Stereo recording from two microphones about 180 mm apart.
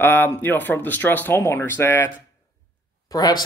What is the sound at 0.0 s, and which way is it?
Speech, 10° left (ahead or behind).